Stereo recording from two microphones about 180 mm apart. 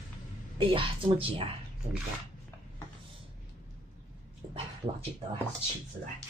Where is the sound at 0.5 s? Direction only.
30° right (ahead or behind).